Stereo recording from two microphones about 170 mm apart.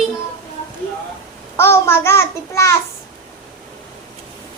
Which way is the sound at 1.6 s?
15° left (ahead or behind).